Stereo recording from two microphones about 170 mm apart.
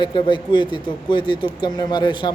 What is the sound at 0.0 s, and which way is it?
Speech, 25° left (ahead or behind).